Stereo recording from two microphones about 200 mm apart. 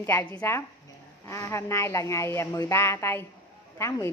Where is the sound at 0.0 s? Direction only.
10° left (ahead or behind).